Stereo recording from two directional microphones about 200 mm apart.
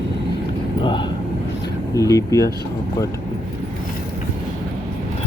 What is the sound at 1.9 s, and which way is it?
Speech, 15° left (ahead or behind).